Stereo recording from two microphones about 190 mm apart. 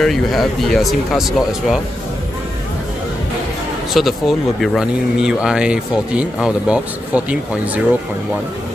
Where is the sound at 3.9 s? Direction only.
Centre (ahead or behind).